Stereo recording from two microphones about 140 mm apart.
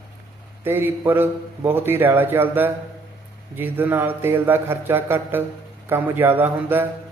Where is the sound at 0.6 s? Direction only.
15° right (ahead or behind).